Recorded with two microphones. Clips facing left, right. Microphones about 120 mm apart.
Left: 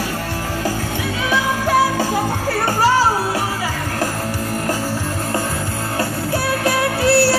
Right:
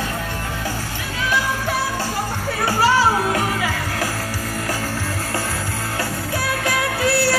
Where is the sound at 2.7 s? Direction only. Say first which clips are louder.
Left 1 dB; 45° left (ahead or behind).